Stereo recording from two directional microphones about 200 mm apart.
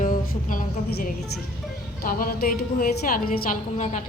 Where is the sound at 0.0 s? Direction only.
45° left (ahead or behind).